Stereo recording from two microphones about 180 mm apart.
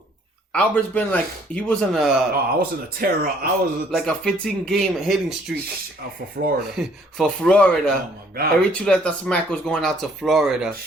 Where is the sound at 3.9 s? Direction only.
Centre (ahead or behind).